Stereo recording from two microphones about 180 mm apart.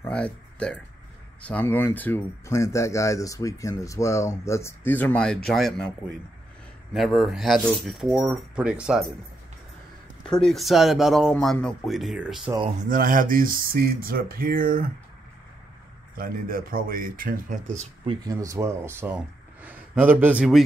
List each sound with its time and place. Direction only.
0.0 s speech: 5° left (ahead or behind)
10.4 s speech: centre (ahead or behind)
12.8 s speech: 50° right (ahead or behind)
16.2 s speech: 55° right (ahead or behind)
18.0 s speech: 20° right (ahead or behind)